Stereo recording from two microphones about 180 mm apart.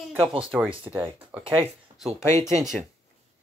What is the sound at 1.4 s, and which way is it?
Speech, 30° right (ahead or behind).